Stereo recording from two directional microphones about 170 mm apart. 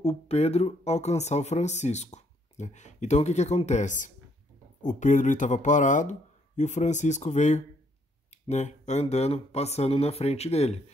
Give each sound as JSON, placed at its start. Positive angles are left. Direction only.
{"t": 0.0, "sound": "speech", "side_deg": 40}